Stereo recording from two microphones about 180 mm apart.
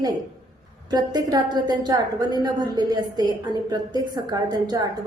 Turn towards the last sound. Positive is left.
turn(degrees=-20)  # may be behind; listen again after turning